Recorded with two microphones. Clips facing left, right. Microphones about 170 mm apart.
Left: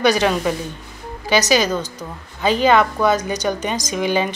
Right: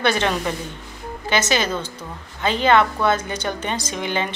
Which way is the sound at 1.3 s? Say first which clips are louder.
Left 5 dB; 25° right (ahead or behind).